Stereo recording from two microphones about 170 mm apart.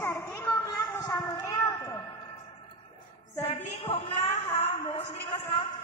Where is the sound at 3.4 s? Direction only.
35° left (ahead or behind).